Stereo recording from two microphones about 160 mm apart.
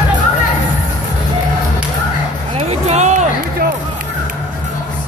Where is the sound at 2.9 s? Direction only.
45° right (ahead or behind).